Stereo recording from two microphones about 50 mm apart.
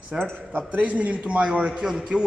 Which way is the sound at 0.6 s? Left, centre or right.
Right.